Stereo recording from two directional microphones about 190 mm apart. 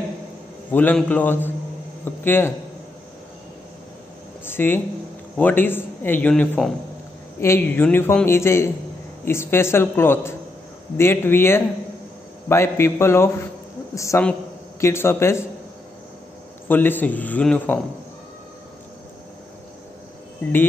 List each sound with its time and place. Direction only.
0.7 s a man's voice: 10° left (ahead or behind)
4.5 s a man's voice: 10° left (ahead or behind)
16.6 s a man's voice: 10° left (ahead or behind)